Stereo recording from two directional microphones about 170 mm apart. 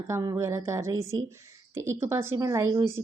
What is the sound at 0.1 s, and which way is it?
Speech, 20° right (ahead or behind).